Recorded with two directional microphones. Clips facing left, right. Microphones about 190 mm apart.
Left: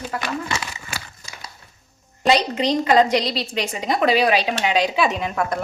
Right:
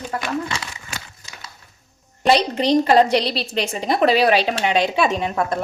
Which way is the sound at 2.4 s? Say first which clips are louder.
Right 3 dB; 30° right (ahead or behind).